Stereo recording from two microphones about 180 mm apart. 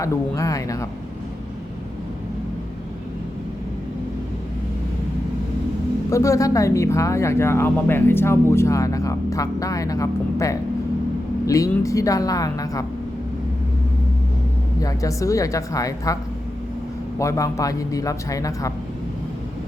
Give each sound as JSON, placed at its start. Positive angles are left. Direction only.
{"t": 0.0, "sound": "speech", "side_deg": 20}
{"t": 6.1, "sound": "a man's voice", "side_deg": 15}
{"t": 14.8, "sound": "a man's voice", "side_deg": 20}
{"t": 17.2, "sound": "a man's voice", "side_deg": 15}